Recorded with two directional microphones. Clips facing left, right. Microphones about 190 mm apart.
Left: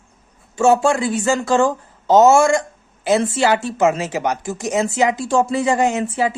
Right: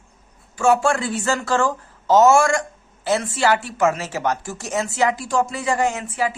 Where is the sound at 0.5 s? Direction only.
25° left (ahead or behind).